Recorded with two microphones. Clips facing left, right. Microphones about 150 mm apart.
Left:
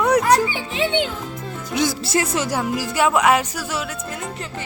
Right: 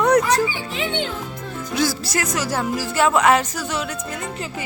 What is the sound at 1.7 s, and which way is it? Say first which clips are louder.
Speech: left 2 dB; 20° left (ahead or behind).